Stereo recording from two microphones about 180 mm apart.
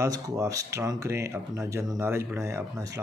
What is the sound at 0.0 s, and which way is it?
Speech, 20° right (ahead or behind).